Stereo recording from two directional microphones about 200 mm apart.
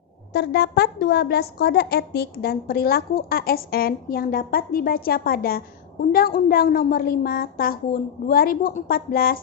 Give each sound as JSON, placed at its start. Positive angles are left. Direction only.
{"t": 0.3, "sound": "a woman's voice", "side_deg": 55}